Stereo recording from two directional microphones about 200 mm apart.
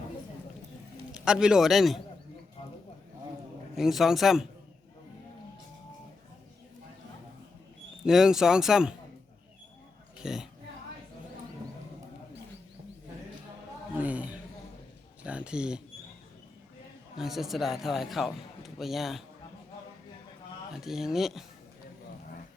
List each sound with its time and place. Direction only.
1.1 s a man's voice: 5° right (ahead or behind)
3.8 s a man's voice: centre (ahead or behind)
8.0 s a man's voice: centre (ahead or behind)
10.2 s speech: 5° right (ahead or behind)
13.9 s a sound: 5° right (ahead or behind)
17.2 s a man's voice: centre (ahead or behind)
20.7 s a man's voice: centre (ahead or behind)